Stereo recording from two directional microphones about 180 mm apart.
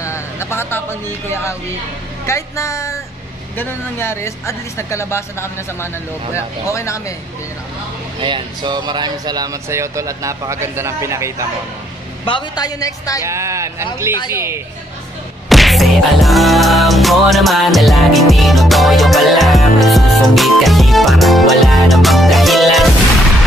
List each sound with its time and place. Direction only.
0.0 s speech: 15° left (ahead or behind)
8.2 s speech: 25° right (ahead or behind)
12.3 s a woman's voice: 25° left (ahead or behind)
13.2 s speech: 15° right (ahead or behind)
15.4 s music: centre (ahead or behind)